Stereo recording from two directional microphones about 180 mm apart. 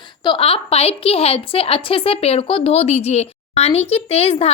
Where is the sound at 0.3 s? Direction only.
30° left (ahead or behind).